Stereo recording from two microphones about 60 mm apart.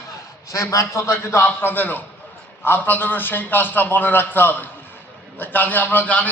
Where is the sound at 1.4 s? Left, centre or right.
Left.